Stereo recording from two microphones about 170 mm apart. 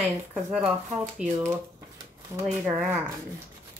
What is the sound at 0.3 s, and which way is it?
A woman's voice, 5° right (ahead or behind).